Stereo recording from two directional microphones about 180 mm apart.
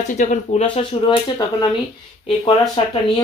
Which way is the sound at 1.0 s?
25° left (ahead or behind).